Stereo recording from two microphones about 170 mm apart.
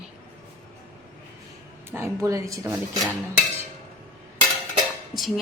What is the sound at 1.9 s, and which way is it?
Speech, 15° right (ahead or behind).